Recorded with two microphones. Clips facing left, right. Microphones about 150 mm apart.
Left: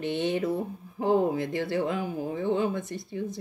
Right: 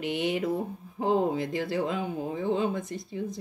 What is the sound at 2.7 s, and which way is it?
Speech, 25° left (ahead or behind).